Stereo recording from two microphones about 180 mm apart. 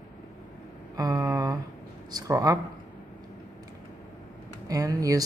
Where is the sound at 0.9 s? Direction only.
20° right (ahead or behind).